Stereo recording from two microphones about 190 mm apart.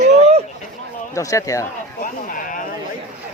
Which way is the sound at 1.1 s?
15° left (ahead or behind).